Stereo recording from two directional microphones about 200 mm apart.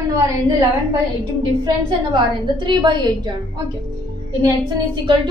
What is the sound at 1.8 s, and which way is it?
A woman's voice, 25° right (ahead or behind).